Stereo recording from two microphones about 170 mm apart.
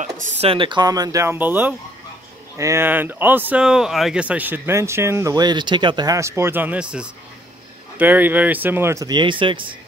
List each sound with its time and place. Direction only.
0.0 s speech: 45° right (ahead or behind); by 9.8 s 30° right (ahead or behind)